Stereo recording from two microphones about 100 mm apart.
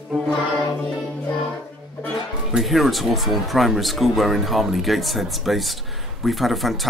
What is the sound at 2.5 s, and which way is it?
Speech, centre (ahead or behind).